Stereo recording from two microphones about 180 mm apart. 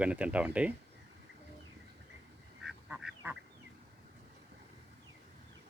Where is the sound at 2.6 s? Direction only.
5° right (ahead or behind).